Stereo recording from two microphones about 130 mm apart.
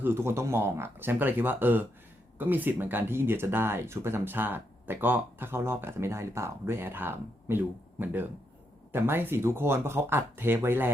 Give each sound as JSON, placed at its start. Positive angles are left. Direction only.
{"t": 0.0, "sound": "speech", "side_deg": -20}